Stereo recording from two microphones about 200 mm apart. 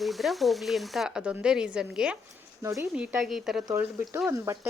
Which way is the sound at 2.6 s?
15° right (ahead or behind).